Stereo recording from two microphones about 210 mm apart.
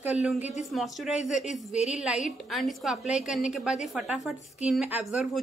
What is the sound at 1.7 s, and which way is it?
Speech, 30° left (ahead or behind).